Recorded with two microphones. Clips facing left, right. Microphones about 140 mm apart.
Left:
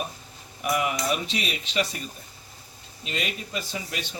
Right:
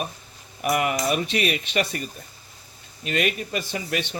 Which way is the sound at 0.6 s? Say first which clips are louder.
Right 3 dB; 60° right (ahead or behind).